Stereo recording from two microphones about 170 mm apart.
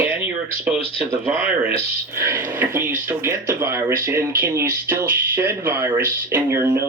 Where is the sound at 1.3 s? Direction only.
10° right (ahead or behind).